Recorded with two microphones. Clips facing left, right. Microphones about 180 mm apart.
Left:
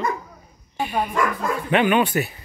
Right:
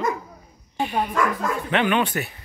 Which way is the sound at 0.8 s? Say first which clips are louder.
Even; 10° left (ahead or behind).